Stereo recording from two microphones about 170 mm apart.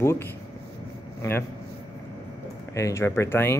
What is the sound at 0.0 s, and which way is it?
Speech, 15° left (ahead or behind).